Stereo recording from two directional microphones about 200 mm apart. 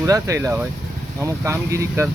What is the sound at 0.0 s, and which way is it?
Speech, 15° right (ahead or behind).